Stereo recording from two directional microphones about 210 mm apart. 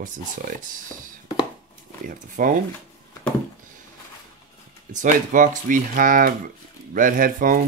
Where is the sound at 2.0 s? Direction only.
40° right (ahead or behind).